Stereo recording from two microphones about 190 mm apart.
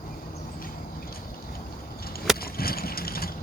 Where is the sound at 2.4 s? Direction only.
55° left (ahead or behind).